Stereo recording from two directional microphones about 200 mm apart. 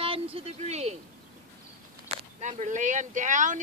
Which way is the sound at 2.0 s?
35° right (ahead or behind).